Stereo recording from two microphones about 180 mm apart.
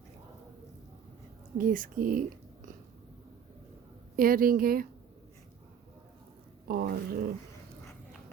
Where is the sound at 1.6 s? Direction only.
50° right (ahead or behind).